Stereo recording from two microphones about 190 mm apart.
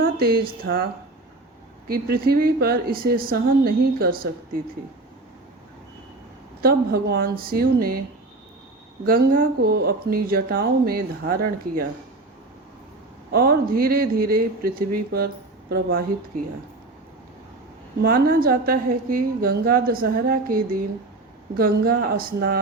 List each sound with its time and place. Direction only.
0.0 s speech: 50° right (ahead or behind)
1.9 s speech: 55° right (ahead or behind)
6.6 s speech: 55° right (ahead or behind)
9.0 s speech: 50° right (ahead or behind)
13.3 s speech: 55° right (ahead or behind)
18.0 s speech: 50° right (ahead or behind)